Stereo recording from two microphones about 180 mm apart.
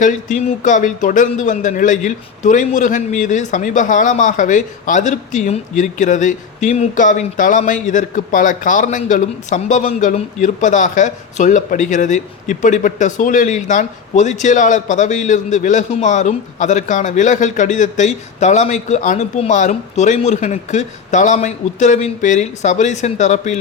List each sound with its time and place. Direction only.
0.0 s speech: 45° left (ahead or behind)